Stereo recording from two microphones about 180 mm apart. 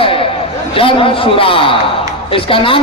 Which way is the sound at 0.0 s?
30° left (ahead or behind).